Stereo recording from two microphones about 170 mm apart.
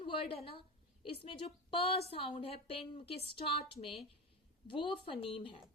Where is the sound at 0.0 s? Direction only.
30° left (ahead or behind).